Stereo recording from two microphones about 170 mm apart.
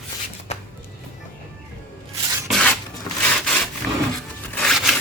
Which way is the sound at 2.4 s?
Centre (ahead or behind).